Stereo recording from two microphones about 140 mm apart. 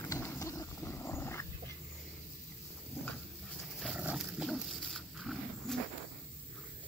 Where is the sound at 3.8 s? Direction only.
5° right (ahead or behind).